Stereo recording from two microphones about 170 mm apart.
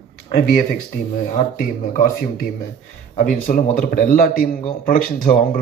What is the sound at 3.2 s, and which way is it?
Speech, 50° left (ahead or behind).